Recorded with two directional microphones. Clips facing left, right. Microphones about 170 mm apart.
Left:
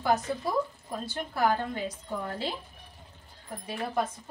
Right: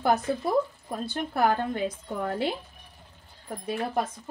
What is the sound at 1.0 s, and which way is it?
A woman's voice, 55° right (ahead or behind).